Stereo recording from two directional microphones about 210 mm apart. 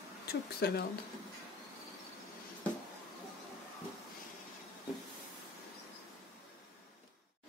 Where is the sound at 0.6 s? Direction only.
45° left (ahead or behind).